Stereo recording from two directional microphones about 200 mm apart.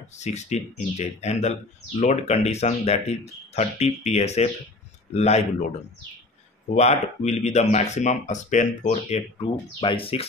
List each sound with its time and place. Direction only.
0.2 s speech: 35° left (ahead or behind)
6.7 s speech: 35° left (ahead or behind)